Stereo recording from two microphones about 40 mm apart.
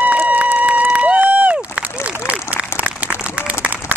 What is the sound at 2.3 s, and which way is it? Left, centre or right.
Applause, right.